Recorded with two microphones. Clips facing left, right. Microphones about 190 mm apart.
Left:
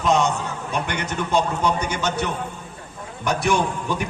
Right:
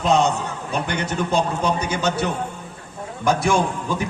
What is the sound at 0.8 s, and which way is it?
A man's voice, 35° right (ahead or behind).